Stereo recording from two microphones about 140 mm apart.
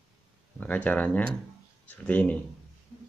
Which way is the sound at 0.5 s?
10° left (ahead or behind).